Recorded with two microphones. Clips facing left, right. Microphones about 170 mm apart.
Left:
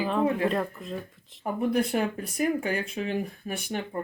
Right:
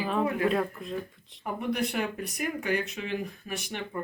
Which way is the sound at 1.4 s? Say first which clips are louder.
Left 4 dB; 30° left (ahead or behind).